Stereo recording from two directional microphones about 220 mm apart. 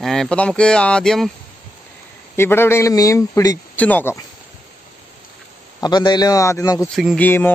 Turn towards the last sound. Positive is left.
turn(degrees=10)  # may be behind; listen again after turning